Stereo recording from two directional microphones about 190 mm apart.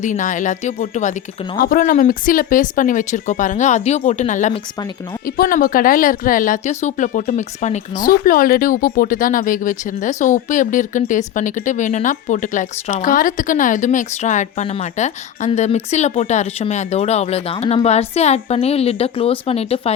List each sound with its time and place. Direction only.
0.0 s speech: 40° left (ahead or behind)